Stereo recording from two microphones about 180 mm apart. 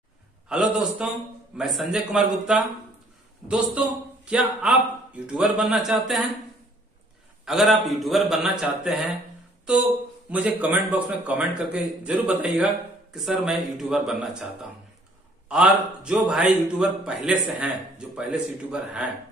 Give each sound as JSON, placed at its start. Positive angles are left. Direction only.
{"t": 0.5, "sound": "a man's voice", "side_deg": -5}
{"t": 7.4, "sound": "a man's voice", "side_deg": 0}
{"t": 10.3, "sound": "a man's voice", "side_deg": -10}